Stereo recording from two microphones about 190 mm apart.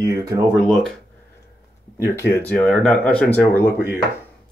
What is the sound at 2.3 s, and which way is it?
Speech, 10° left (ahead or behind).